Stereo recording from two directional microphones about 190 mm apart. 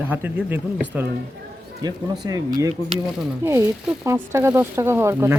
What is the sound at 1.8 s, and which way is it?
Speech, 20° right (ahead or behind).